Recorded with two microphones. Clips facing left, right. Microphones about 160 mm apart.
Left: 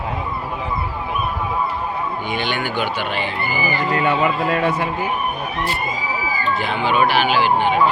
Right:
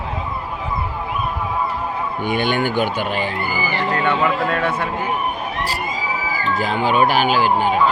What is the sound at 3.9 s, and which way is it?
Speech, 10° left (ahead or behind).